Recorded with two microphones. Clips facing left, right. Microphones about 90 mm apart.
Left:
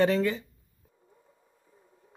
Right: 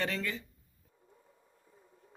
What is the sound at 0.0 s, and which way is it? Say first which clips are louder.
Speech: left 11 dB; 20° left (ahead or behind).